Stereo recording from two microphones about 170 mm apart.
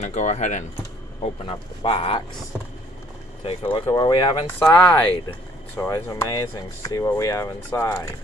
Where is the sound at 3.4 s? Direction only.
30° left (ahead or behind).